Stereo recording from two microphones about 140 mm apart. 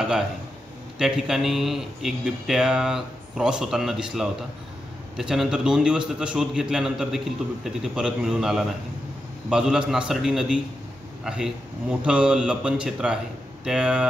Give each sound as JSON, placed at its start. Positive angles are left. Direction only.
{"t": 0.9, "sound": "a man's voice", "side_deg": -5}